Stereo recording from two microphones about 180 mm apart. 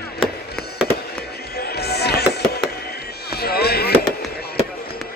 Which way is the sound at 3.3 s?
60° left (ahead or behind).